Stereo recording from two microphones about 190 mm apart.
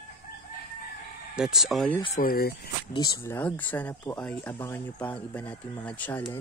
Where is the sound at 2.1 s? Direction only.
50° left (ahead or behind).